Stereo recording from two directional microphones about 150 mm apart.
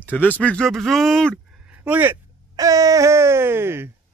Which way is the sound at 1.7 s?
10° right (ahead or behind).